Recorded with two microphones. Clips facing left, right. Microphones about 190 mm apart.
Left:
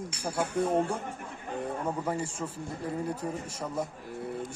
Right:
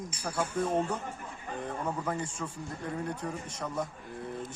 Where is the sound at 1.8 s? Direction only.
10° left (ahead or behind).